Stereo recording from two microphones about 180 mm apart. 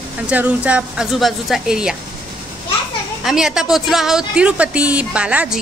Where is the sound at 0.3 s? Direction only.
10° right (ahead or behind).